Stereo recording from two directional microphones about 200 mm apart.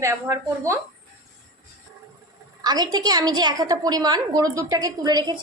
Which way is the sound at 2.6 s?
20° right (ahead or behind).